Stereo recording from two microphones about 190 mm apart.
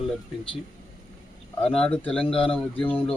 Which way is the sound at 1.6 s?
5° left (ahead or behind).